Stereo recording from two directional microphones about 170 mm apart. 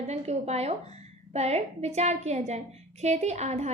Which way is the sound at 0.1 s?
40° right (ahead or behind).